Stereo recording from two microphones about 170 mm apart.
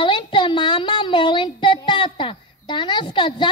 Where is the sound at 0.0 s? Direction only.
30° left (ahead or behind).